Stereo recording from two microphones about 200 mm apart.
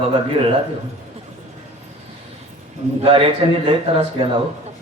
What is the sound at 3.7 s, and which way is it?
Speech, 25° right (ahead or behind).